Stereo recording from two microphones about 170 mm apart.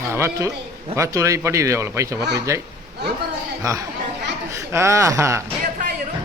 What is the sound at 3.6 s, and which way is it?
Speech, 20° right (ahead or behind).